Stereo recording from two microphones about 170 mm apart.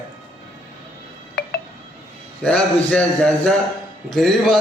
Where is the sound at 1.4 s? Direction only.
70° left (ahead or behind).